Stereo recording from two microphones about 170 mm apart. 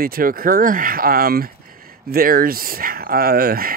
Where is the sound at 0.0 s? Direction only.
60° right (ahead or behind).